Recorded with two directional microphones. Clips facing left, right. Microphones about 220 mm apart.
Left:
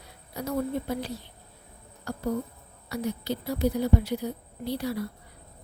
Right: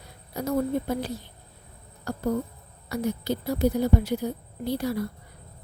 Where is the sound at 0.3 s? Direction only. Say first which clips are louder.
Right 3 dB; 45° right (ahead or behind).